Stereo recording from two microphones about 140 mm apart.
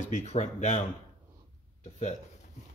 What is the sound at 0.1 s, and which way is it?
Speech, 55° left (ahead or behind).